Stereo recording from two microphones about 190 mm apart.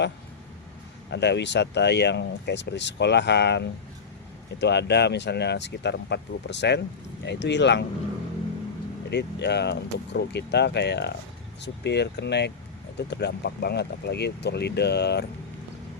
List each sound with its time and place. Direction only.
1.1 s speech: 65° left (ahead or behind)
9.0 s speech: 65° left (ahead or behind)